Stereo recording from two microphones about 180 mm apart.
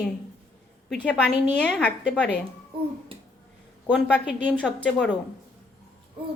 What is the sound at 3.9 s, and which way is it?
Speech, 5° right (ahead or behind).